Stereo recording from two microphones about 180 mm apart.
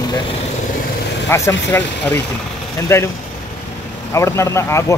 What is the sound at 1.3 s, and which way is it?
Speech, 15° left (ahead or behind).